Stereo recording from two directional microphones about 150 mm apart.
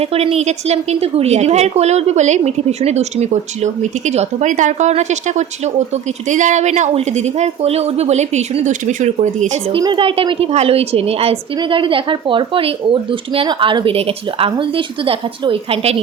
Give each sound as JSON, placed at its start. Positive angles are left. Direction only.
{"t": 0.0, "sound": "a woman's voice", "side_deg": -40}
{"t": 9.7, "sound": "a woman's voice", "side_deg": -35}